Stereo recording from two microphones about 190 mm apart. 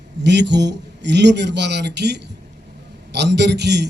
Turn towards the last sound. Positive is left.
turn(degrees=-65)  # may be behind; listen again after turning